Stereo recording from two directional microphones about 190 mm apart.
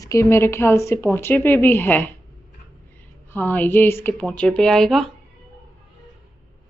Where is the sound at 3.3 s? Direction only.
10° left (ahead or behind).